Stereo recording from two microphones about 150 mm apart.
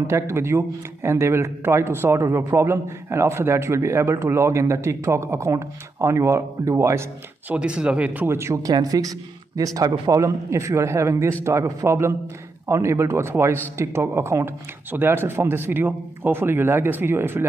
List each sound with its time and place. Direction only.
0.0 s a man's voice: 20° right (ahead or behind)